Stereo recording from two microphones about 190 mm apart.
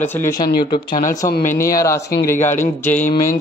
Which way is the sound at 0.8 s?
45° left (ahead or behind).